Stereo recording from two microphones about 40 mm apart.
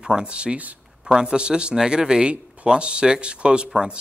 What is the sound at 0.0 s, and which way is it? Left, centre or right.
Speech, centre.